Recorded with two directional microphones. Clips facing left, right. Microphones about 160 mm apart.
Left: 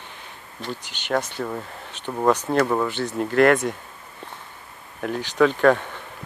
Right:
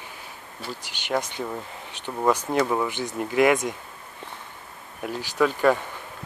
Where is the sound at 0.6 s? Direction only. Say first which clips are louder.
Left 4 dB; 10° right (ahead or behind).